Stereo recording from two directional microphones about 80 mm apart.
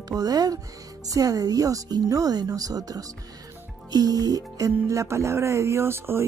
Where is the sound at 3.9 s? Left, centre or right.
Right.